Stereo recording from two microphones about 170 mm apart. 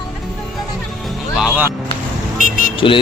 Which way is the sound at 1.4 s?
5° right (ahead or behind).